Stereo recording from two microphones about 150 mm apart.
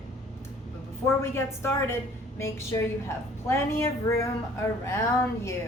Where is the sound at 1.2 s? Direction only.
15° left (ahead or behind).